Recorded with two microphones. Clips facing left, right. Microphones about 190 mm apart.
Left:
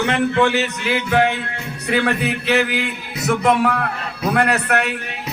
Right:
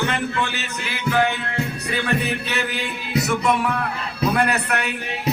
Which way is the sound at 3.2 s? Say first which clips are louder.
Left 6 dB; 55° left (ahead or behind).